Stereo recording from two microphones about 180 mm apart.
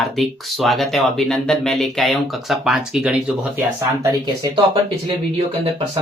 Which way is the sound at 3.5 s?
15° right (ahead or behind).